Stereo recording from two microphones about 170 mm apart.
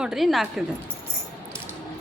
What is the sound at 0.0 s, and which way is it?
Speech, centre (ahead or behind).